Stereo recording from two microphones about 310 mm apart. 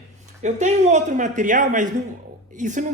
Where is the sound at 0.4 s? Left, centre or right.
Right.